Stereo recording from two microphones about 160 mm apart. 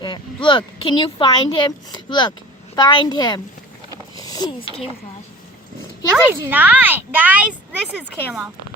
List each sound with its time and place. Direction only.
0.4 s speech: 30° left (ahead or behind)
6.1 s speech: 10° right (ahead or behind)